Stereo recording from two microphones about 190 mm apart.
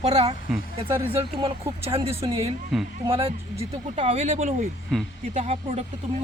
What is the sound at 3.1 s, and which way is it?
Speech, 30° right (ahead or behind).